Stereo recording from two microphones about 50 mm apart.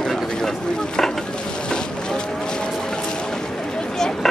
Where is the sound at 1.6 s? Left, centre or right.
Centre.